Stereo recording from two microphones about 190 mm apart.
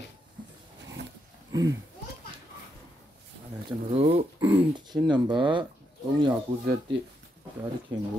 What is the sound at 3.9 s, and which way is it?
Speech, 30° right (ahead or behind).